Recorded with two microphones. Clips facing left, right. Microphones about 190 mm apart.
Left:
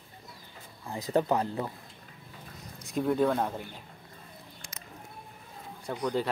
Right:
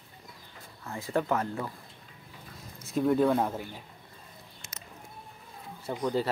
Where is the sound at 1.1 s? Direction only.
20° left (ahead or behind).